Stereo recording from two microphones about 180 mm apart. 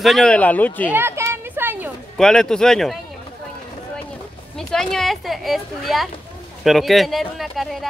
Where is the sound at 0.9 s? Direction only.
15° right (ahead or behind).